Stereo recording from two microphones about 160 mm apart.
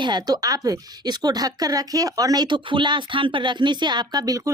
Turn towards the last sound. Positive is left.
turn(degrees=-25)  # may be behind; listen again after turning